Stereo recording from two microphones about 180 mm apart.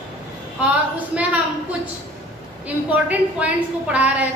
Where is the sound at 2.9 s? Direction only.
10° right (ahead or behind).